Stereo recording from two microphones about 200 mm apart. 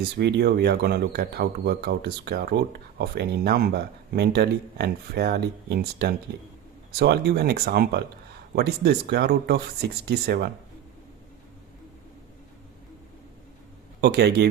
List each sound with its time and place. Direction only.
0.2 s speech: 55° right (ahead or behind)
14.0 s speech: 55° right (ahead or behind)